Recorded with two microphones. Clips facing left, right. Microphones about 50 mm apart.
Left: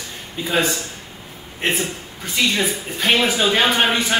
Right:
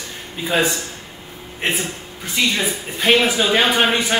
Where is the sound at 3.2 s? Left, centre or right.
Centre.